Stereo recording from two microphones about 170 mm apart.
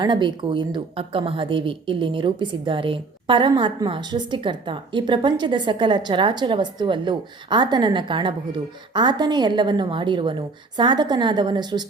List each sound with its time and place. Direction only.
0.0 s speech: 30° right (ahead or behind)